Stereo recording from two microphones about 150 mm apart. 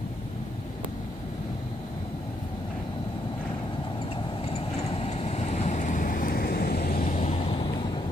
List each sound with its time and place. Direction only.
4.5 s vehicle: 40° left (ahead or behind); by 7.2 s 85° left
7.2 s vehicle: 45° left (ahead or behind)